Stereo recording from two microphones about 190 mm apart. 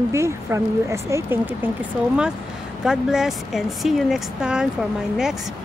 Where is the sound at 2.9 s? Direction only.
5° right (ahead or behind).